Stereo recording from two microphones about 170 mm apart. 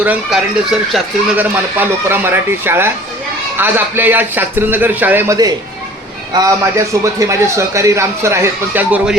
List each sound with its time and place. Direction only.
0.0 s a man's voice: 5° right (ahead or behind)